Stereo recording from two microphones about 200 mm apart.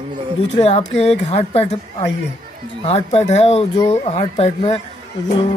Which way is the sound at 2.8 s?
30° left (ahead or behind).